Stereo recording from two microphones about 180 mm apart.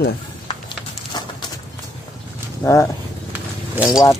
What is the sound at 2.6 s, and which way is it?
Wild animals, 20° left (ahead or behind).